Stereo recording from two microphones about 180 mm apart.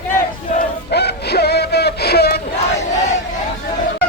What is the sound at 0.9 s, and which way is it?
Music, 65° left (ahead or behind).